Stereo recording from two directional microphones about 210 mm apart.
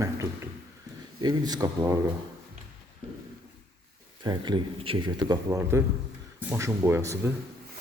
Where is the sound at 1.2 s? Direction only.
20° right (ahead or behind).